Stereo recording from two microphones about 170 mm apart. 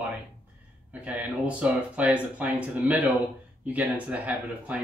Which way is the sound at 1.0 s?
10° right (ahead or behind).